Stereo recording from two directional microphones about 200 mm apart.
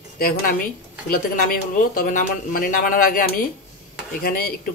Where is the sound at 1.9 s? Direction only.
45° left (ahead or behind).